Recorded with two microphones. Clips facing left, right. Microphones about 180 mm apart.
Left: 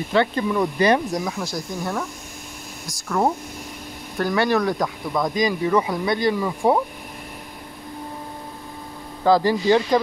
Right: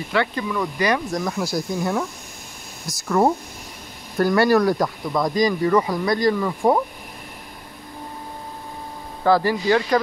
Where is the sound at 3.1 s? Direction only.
5° right (ahead or behind).